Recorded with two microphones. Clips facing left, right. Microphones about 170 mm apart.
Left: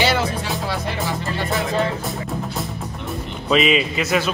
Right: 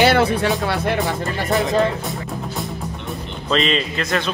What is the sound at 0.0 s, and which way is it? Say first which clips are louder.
Music: right 5 dB; 60° right (ahead or behind).